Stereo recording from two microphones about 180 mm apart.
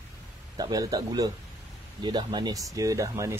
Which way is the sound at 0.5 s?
20° right (ahead or behind).